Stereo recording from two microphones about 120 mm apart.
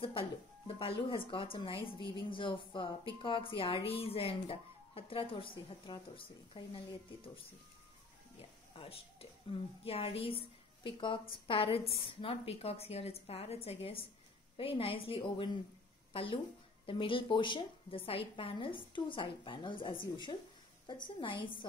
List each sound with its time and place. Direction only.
0.0 s speech: 50° left (ahead or behind)
8.4 s a woman's voice: 55° left (ahead or behind)
21.2 s speech: 45° left (ahead or behind)